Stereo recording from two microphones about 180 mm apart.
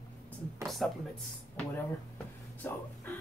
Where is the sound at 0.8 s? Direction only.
Centre (ahead or behind).